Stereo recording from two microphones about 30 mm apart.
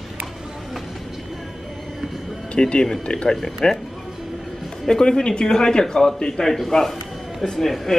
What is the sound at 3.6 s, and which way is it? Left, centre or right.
Speech, left.